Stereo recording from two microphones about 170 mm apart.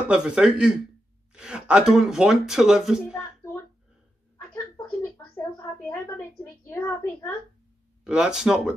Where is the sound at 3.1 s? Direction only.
15° left (ahead or behind).